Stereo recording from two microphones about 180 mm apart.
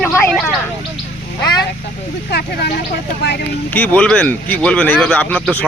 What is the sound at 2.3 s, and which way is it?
Speech, 65° left (ahead or behind).